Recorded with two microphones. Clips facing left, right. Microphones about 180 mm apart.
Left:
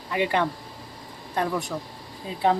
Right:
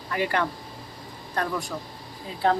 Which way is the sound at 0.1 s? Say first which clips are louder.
Left 2 dB; 20° left (ahead or behind).